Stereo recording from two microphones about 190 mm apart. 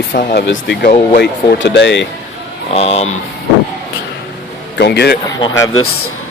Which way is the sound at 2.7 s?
35° left (ahead or behind).